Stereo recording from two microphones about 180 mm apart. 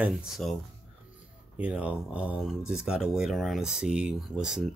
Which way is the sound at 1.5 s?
5° right (ahead or behind).